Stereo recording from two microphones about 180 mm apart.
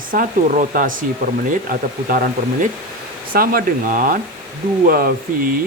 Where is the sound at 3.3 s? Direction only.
55° right (ahead or behind).